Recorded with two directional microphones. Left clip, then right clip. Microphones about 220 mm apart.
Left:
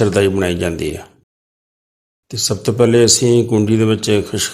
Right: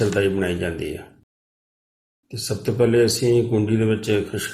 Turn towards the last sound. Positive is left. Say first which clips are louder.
# left 6 dB
turn(degrees=45)  # may be behind; listen again after turning